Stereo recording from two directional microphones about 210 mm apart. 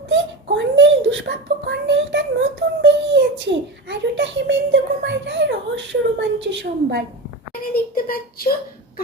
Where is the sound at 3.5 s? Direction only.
55° right (ahead or behind).